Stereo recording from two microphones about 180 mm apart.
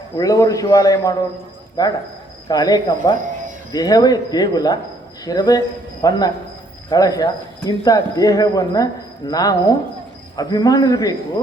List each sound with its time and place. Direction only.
0.2 s a man's voice: 20° left (ahead or behind)